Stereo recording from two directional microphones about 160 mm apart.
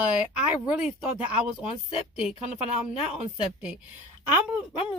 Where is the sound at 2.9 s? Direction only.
40° left (ahead or behind).